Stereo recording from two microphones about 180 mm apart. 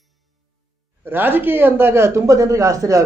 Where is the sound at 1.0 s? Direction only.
10° right (ahead or behind).